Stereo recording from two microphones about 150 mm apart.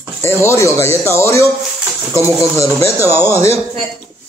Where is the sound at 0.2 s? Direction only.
20° left (ahead or behind).